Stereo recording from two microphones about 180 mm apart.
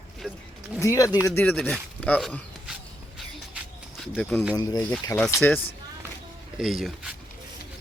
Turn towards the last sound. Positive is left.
turn(degrees=-5)  # may be behind; listen again after turning